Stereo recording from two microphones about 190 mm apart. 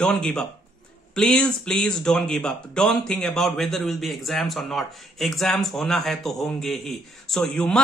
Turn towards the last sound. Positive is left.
turn(degrees=5)  # may be behind; listen again after turning